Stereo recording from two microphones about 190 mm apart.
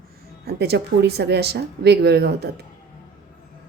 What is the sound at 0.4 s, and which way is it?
A woman's voice, 60° right (ahead or behind).